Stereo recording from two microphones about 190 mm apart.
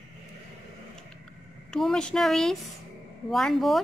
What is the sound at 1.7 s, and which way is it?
A woman's voice, 5° left (ahead or behind).